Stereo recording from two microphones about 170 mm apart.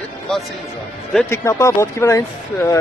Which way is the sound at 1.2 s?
15° left (ahead or behind).